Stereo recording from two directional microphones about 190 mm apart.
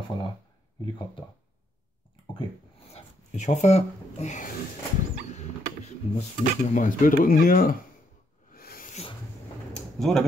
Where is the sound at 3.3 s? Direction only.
35° left (ahead or behind).